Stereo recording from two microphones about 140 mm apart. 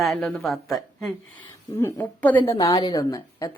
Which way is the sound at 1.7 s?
15° left (ahead or behind).